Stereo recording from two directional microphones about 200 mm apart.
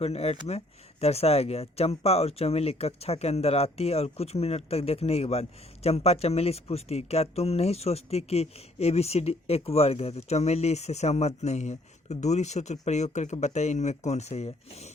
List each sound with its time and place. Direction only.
0.0 s speech: 30° left (ahead or behind)